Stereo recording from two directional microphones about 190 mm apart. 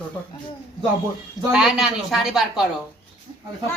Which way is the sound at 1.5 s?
Centre (ahead or behind).